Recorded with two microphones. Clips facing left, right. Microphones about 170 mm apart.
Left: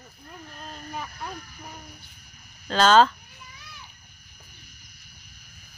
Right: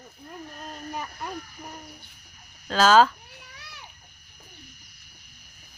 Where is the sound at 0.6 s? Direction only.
5° right (ahead or behind).